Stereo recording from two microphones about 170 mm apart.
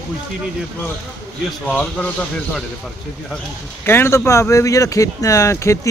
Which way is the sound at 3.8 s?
15° left (ahead or behind).